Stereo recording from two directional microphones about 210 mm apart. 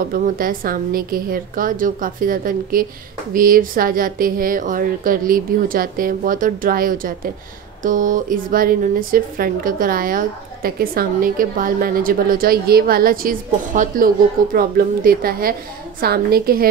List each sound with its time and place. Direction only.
0.1 s a woman's voice: 40° right (ahead or behind)